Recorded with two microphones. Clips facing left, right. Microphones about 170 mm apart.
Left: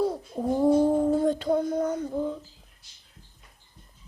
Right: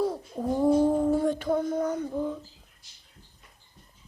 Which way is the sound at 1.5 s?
10° left (ahead or behind).